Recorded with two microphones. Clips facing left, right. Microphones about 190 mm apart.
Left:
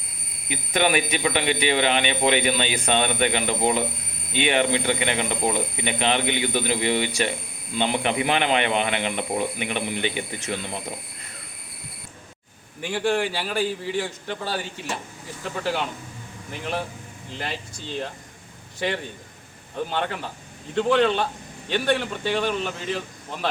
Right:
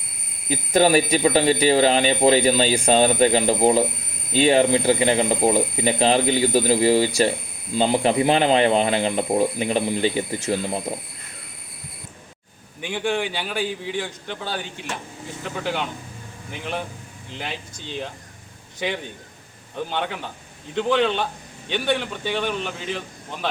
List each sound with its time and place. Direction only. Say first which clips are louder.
0.4 s speech: right 5 dB; 35° right (ahead or behind)
12.8 s a man's voice: left 1 dB; centre (ahead or behind)